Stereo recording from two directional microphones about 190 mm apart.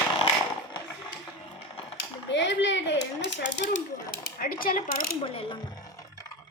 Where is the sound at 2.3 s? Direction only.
70° left (ahead or behind).